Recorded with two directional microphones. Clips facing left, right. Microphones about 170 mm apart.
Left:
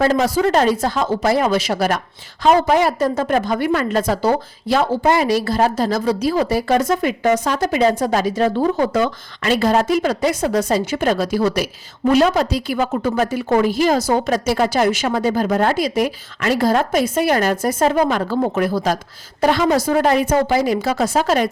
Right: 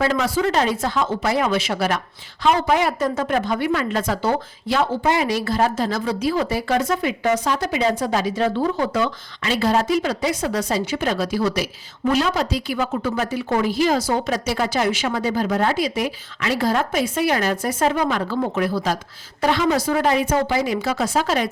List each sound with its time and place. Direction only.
0.0 s a woman's voice: 40° left (ahead or behind)